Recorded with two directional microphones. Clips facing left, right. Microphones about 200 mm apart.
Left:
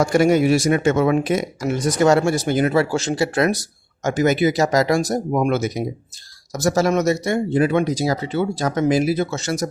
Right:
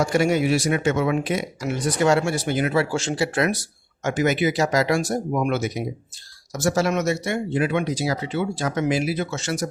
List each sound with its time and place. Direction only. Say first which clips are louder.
0.0 s speech: left 4 dB; 45° left (ahead or behind)